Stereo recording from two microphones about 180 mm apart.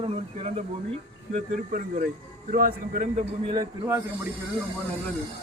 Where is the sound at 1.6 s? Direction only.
45° right (ahead or behind).